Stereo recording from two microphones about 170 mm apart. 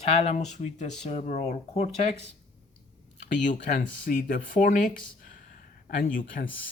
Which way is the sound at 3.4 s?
50° left (ahead or behind).